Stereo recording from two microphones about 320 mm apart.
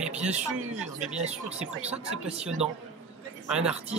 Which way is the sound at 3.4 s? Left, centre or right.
Centre.